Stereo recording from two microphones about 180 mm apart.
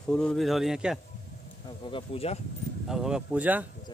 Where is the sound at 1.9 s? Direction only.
30° left (ahead or behind).